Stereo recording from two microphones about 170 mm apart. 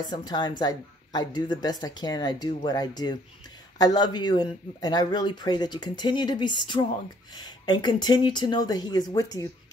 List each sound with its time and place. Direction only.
0.0 s a woman's voice: 25° left (ahead or behind)